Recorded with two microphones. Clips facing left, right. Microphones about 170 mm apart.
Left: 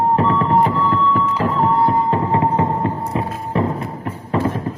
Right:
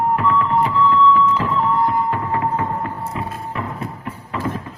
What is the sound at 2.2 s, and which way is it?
Music, 25° left (ahead or behind).